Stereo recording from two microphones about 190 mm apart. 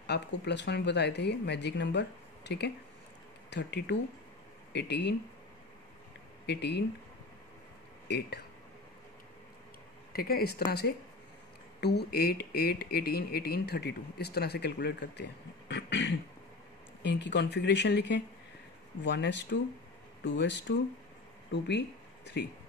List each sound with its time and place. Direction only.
0.0 s speech: 65° left (ahead or behind)
6.4 s speech: 60° left (ahead or behind)
10.1 s speech: 55° left (ahead or behind)
11.8 s speech: 60° left (ahead or behind)